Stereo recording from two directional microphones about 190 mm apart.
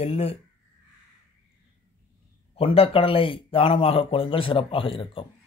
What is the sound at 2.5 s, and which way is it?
A man's voice, 30° left (ahead or behind).